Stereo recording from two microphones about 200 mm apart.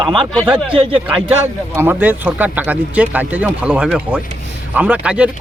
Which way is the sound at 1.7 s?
10° right (ahead or behind).